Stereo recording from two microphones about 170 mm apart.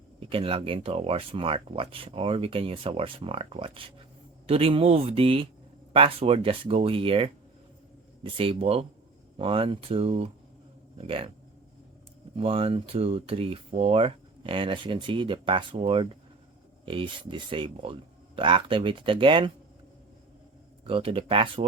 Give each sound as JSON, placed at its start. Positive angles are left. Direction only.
{"t": 0.2, "sound": "speech", "side_deg": -35}
{"t": 12.4, "sound": "speech", "side_deg": -35}
{"t": 20.8, "sound": "speech", "side_deg": -30}